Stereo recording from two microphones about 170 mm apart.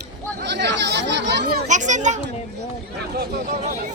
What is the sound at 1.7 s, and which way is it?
Speech, 45° right (ahead or behind).